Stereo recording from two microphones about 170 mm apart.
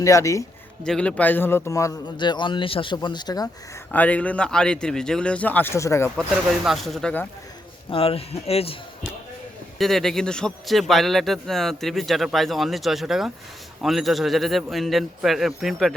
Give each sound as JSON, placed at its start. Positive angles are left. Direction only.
{"t": 0.0, "sound": "a man's voice", "side_deg": 20}
{"t": 0.9, "sound": "a man's voice", "side_deg": 5}
{"t": 3.9, "sound": "a man's voice", "side_deg": 10}
{"t": 6.1, "sound": "a man's voice", "side_deg": 0}
{"t": 7.9, "sound": "a man's voice", "side_deg": 35}
{"t": 9.7, "sound": "a man's voice", "side_deg": 0}